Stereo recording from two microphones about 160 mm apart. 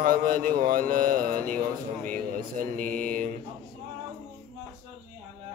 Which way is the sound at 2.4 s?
60° right (ahead or behind).